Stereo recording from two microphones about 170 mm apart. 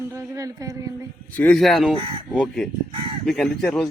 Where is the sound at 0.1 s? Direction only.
20° right (ahead or behind).